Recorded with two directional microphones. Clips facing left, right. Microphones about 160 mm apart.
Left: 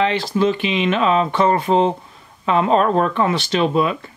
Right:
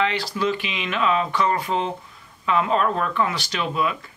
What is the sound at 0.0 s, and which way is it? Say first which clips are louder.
Speech: left 6 dB; 25° left (ahead or behind).